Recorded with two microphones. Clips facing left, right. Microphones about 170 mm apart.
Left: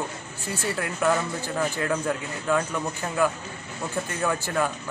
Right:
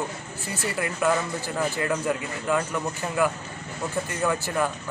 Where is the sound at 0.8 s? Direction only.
10° right (ahead or behind).